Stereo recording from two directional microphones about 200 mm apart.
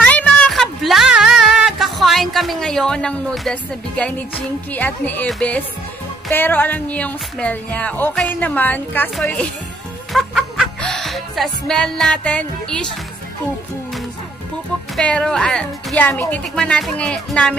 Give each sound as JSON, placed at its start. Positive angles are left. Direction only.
{"t": 0.0, "sound": "a sound", "side_deg": 5}
{"t": 4.7, "sound": "speech", "side_deg": 10}
{"t": 15.0, "sound": "a woman's voice", "side_deg": 5}